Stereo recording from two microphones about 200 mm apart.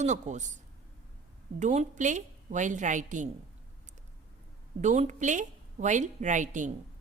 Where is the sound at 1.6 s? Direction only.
35° right (ahead or behind).